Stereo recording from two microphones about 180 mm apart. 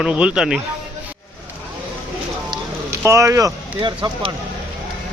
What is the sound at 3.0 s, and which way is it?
Speech, 15° right (ahead or behind).